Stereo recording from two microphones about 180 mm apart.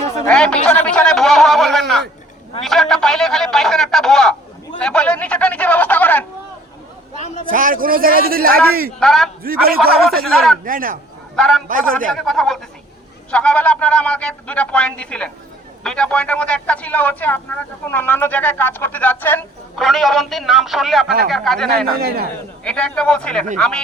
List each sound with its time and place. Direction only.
0.3 s a sound: 5° left (ahead or behind)
4.8 s a man's voice: 5° left (ahead or behind)
7.5 s a man's voice: 50° right (ahead or behind)
9.0 s speech: centre (ahead or behind)
9.4 s speech: 55° right (ahead or behind)
9.9 s speech: centre (ahead or behind)
10.7 s a man's voice: 50° right (ahead or behind)
11.3 s speech: centre (ahead or behind)
19.7 s speech: centre (ahead or behind)
22.0 s speech: 60° right (ahead or behind)
22.6 s speech: 5° left (ahead or behind)